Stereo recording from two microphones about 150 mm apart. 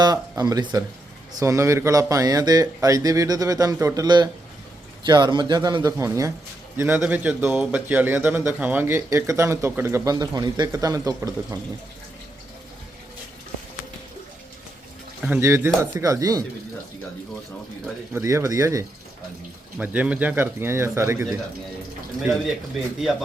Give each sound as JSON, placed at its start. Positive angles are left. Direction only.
{"t": 0.0, "sound": "speech", "side_deg": -25}
{"t": 15.4, "sound": "speech", "side_deg": -20}
{"t": 18.1, "sound": "speech", "side_deg": -20}
{"t": 19.8, "sound": "speech", "side_deg": -10}